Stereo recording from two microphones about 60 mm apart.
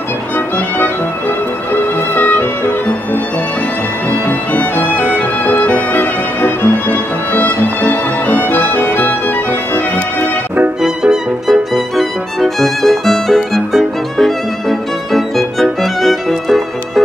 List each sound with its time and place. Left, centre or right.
2.1 s music: left
4.3 s music: left
10.8 s music: centre